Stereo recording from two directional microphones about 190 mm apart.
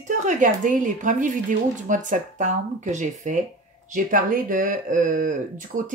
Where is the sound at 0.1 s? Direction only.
40° right (ahead or behind).